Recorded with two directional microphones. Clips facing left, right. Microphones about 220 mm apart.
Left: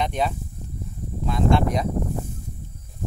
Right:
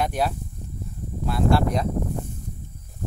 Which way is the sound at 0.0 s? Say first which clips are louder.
Even; 5° right (ahead or behind).